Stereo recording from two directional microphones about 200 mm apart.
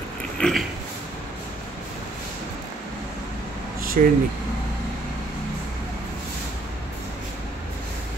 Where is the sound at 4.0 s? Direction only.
40° right (ahead or behind).